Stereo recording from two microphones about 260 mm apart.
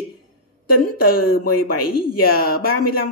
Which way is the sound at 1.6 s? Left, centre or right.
Left.